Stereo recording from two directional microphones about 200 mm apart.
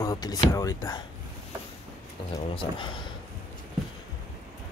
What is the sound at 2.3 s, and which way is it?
Speech, 25° left (ahead or behind).